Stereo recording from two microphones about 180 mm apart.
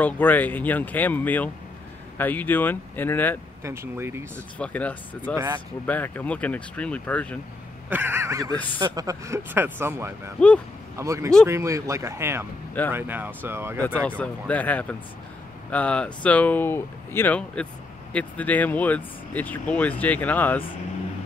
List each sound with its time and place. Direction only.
0.0 s speech: 10° left (ahead or behind)
3.6 s speech: 15° right (ahead or behind)
4.6 s speech: 10° left (ahead or behind)
7.9 s speech: 10° right (ahead or behind)
14.2 s speech: 10° left (ahead or behind)